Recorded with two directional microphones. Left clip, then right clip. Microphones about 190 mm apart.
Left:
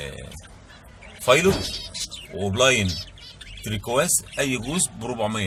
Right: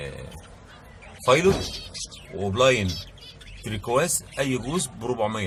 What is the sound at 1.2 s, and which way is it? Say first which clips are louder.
Speech: left 1 dB; 10° left (ahead or behind).